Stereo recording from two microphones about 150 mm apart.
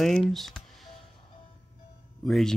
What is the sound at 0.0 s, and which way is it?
Speech, centre (ahead or behind).